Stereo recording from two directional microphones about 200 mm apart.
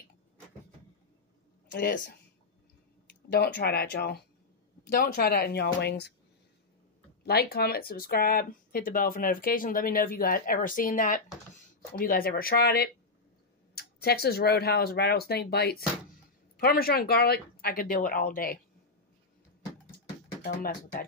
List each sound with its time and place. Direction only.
1.7 s speech: 45° left (ahead or behind)
3.1 s speech: 55° left (ahead or behind)
7.2 s speech: 50° left (ahead or behind)
20.4 s speech: 45° left (ahead or behind)